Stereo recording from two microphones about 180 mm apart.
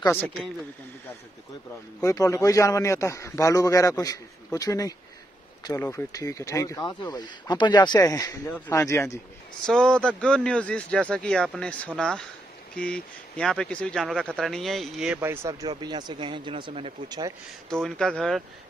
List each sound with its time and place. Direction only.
0.0 s speech: 10° left (ahead or behind)
2.0 s a man's voice: 20° left (ahead or behind)
9.7 s a man's voice: 5° left (ahead or behind)
15.1 s speech: 15° right (ahead or behind)
17.8 s a man's voice: 5° left (ahead or behind)